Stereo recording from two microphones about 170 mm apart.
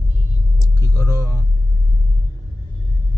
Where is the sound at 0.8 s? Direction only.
15° left (ahead or behind).